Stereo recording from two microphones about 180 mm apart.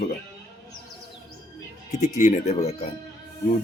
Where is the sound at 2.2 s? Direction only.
40° left (ahead or behind).